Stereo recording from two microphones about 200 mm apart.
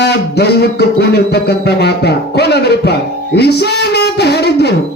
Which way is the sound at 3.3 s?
55° left (ahead or behind).